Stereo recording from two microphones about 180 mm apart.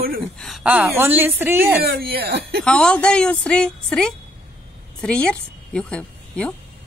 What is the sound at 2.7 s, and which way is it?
A woman's voice, 5° left (ahead or behind).